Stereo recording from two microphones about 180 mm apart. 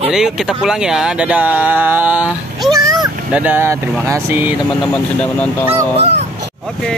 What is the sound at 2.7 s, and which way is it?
Vehicle, 20° right (ahead or behind).